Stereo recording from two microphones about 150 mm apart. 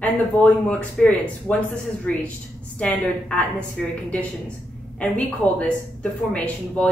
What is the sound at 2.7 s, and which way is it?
Speech, 5° left (ahead or behind).